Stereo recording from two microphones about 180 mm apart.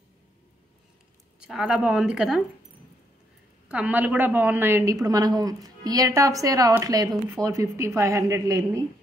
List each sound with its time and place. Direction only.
1.4 s a woman's voice: 5° right (ahead or behind)
3.6 s a woman's voice: 5° right (ahead or behind)